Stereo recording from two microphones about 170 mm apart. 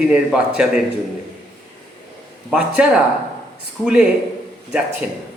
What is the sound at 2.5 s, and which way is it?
Speech, 5° right (ahead or behind).